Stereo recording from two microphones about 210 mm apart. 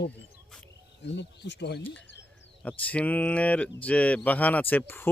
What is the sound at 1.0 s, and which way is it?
Speech, 55° left (ahead or behind).